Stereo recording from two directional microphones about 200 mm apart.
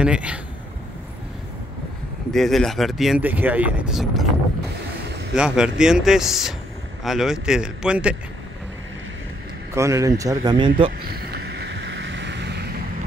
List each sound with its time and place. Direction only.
0.0 s speech: 5° right (ahead or behind)
2.3 s speech: centre (ahead or behind)
5.3 s speech: 5° right (ahead or behind)
9.8 s speech: 15° right (ahead or behind)
11.0 s boat: 50° right (ahead or behind)